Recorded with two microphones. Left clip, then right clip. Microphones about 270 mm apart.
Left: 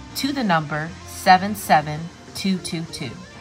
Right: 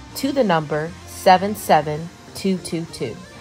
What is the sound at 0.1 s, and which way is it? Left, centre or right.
Speech, left.